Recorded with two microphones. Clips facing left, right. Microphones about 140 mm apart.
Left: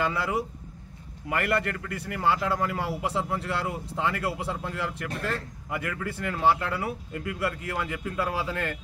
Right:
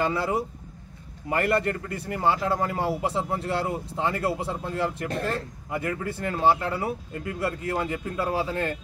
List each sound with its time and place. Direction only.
0.0 s a man's voice: 35° right (ahead or behind)